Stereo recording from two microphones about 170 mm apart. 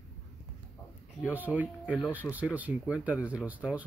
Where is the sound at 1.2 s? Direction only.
10° right (ahead or behind).